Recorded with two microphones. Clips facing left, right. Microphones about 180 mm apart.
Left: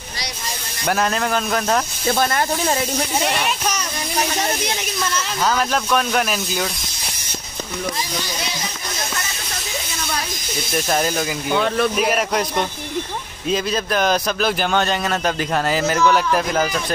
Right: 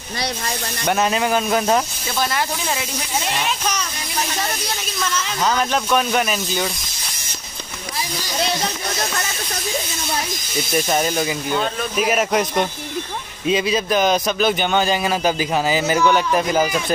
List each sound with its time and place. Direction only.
0.8 s a man's voice: centre (ahead or behind)
2.0 s speech: 50° left (ahead or behind)
3.3 s speech: 10° left (ahead or behind)
5.4 s a man's voice: centre (ahead or behind)
10.7 s a man's voice: centre (ahead or behind)
11.5 s speech: 70° left (ahead or behind)
12.0 s a man's voice: 5° right (ahead or behind)